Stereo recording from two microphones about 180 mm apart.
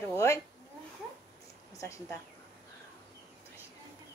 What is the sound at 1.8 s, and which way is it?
Speech, 15° left (ahead or behind).